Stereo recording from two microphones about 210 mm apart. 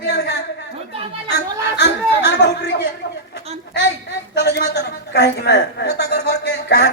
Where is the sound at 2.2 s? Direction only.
55° left (ahead or behind).